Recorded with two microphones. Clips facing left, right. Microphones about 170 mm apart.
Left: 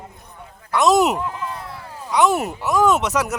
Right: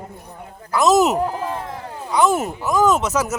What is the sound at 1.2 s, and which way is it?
Speech, 35° right (ahead or behind).